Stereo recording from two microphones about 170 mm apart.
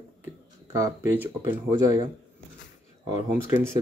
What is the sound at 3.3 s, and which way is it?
Speech, 10° right (ahead or behind).